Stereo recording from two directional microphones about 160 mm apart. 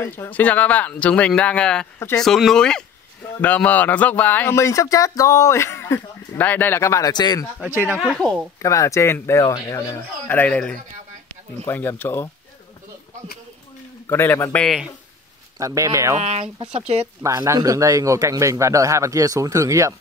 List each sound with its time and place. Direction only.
0.0 s speech: 15° left (ahead or behind)
2.2 s speech: centre (ahead or behind); by 7.4 s 25° left (ahead or behind)
8.0 s speech: centre (ahead or behind)
8.6 s speech: 20° left (ahead or behind)
14.0 s speech: 15° left (ahead or behind)
15.6 s a man's voice: 20° right (ahead or behind)
16.2 s speech: 45° right (ahead or behind)
17.2 s a man's voice: 20° right (ahead or behind)